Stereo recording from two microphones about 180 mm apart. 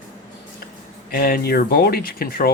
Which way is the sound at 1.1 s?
55° left (ahead or behind).